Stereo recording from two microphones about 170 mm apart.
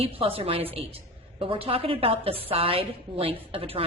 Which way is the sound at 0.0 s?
35° right (ahead or behind).